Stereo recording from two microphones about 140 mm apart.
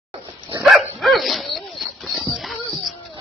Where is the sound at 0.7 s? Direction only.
Centre (ahead or behind).